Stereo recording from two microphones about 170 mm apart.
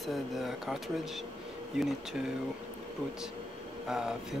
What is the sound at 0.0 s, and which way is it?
Speech, centre (ahead or behind).